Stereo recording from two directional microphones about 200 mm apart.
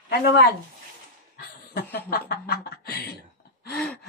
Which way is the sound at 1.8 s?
50° left (ahead or behind).